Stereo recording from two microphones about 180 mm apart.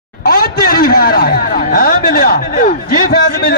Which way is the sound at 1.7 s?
50° left (ahead or behind).